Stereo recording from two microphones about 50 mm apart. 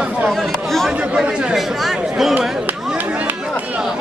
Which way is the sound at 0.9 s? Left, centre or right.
Centre.